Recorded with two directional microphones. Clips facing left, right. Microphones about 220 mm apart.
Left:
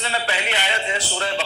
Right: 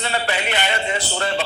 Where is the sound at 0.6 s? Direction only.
60° right (ahead or behind).